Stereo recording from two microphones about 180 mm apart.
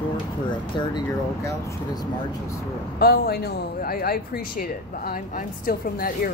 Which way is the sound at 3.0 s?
60° left (ahead or behind).